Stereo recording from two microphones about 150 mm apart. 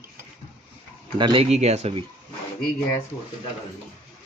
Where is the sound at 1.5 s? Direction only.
50° right (ahead or behind).